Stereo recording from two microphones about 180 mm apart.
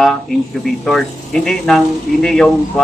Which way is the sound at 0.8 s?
Centre (ahead or behind).